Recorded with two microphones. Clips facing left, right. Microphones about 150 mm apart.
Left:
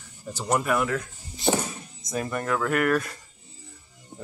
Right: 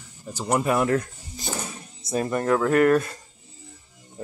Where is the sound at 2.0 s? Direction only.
30° right (ahead or behind).